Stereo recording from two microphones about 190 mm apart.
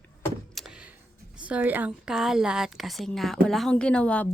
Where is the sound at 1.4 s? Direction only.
5° right (ahead or behind).